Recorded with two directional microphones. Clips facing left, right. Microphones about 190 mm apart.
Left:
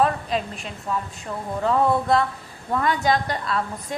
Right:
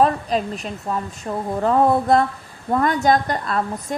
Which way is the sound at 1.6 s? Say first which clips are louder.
Right 3 dB; 45° right (ahead or behind).